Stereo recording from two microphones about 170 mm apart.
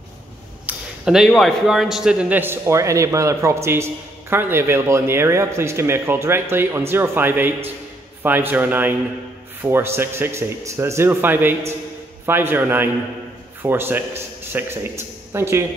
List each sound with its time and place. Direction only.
0.7 s a man's voice: 5° right (ahead or behind)